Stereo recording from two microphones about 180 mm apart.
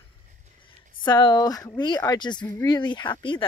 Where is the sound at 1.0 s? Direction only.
25° left (ahead or behind).